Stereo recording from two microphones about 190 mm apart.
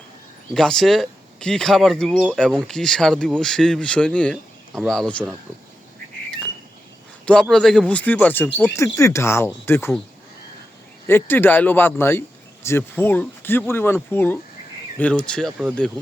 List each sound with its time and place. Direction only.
0.5 s speech: centre (ahead or behind)
7.3 s speech: 5° left (ahead or behind)
11.0 s speech: 10° left (ahead or behind)